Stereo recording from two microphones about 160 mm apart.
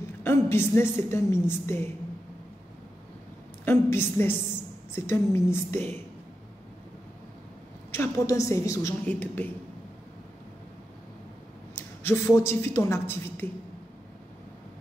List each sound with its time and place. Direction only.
0.2 s a woman's voice: 15° left (ahead or behind)
3.6 s a woman's voice: 15° left (ahead or behind)
7.9 s a woman's voice: 15° left (ahead or behind)
11.7 s a woman's voice: 15° left (ahead or behind)